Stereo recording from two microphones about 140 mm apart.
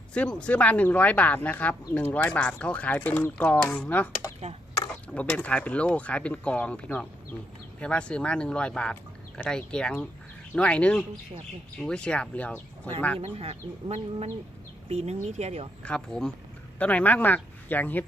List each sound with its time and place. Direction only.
0.1 s speech: 10° left (ahead or behind)
13.1 s speech: 45° right (ahead or behind)
15.8 s speech: 5° left (ahead or behind)